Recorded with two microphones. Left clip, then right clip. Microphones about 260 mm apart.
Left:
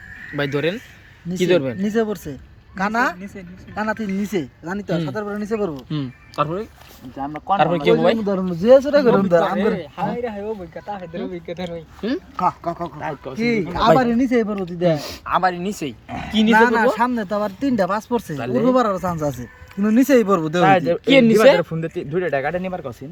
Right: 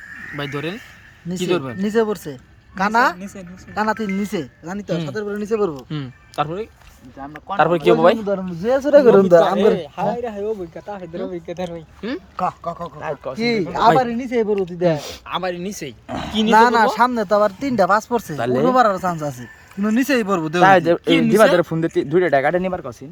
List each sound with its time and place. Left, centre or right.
0.3 s speech: centre
1.8 s speech: centre
8.3 s speech: centre
8.9 s a man's voice: right
12.0 s speech: centre
13.3 s speech: centre
14.0 s speech: centre
15.3 s speech: centre
16.0 s speech: right
16.6 s speech: centre
18.7 s speech: centre
20.7 s speech: centre
21.1 s speech: centre
21.6 s speech: centre